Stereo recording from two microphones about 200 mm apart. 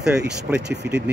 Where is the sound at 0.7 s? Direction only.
55° right (ahead or behind).